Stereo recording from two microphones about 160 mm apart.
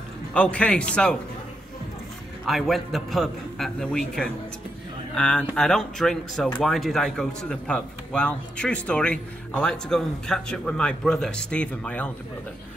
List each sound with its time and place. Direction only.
0.3 s a man's voice: 10° left (ahead or behind)
2.4 s speech: centre (ahead or behind)